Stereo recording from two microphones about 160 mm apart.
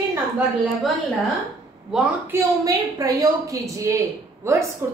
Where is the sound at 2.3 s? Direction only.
20° right (ahead or behind).